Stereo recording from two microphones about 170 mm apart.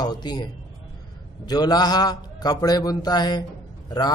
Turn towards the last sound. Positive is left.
turn(degrees=25)  # may be behind; listen again after turning